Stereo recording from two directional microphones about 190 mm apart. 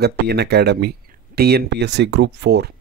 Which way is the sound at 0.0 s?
60° right (ahead or behind).